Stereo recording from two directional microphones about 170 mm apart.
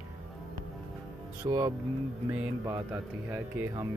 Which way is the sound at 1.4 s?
20° right (ahead or behind).